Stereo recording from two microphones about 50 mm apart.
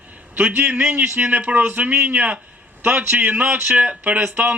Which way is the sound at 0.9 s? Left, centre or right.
Right.